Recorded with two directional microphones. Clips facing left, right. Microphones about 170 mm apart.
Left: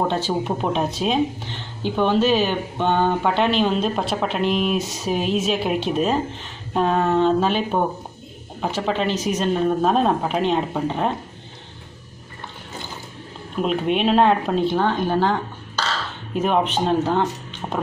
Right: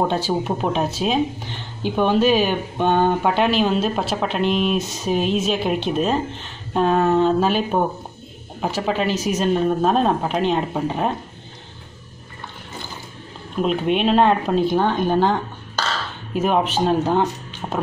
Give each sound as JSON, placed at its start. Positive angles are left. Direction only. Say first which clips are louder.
{"t": 0.1, "sound": "speech", "louder": "right 1 dB", "side_deg": -10}
{"t": 13.6, "sound": "speech", "louder": "right 1 dB", "side_deg": 0}
{"t": 14.7, "sound": "speech", "louder": "right 2 dB", "side_deg": -15}
{"t": 16.3, "sound": "speech", "louder": "right 1 dB", "side_deg": -5}